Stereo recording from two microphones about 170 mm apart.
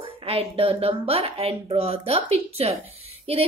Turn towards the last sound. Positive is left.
turn(degrees=-35)  # may be behind; listen again after turning